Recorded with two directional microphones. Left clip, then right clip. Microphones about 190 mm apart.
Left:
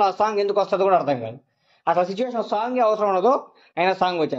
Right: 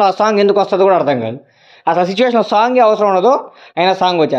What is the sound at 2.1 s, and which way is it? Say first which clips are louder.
A man's voice: right 12 dB; 45° right (ahead or behind).